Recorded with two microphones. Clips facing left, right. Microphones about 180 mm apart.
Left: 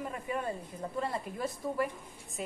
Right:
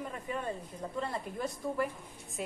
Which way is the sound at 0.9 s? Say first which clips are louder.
Left 1 dB; 5° left (ahead or behind).